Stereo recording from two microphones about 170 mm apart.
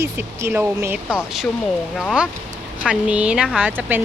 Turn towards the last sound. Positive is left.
turn(degrees=-10)  # may be behind; listen again after turning